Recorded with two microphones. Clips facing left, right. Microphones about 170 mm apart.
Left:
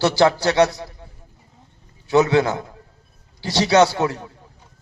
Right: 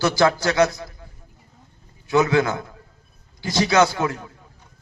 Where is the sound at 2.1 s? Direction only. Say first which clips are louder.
Left 2 dB; 30° left (ahead or behind).